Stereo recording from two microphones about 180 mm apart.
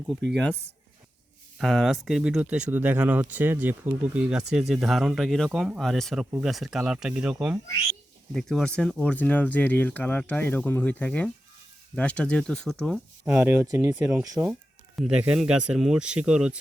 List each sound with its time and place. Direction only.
1.5 s speech: centre (ahead or behind)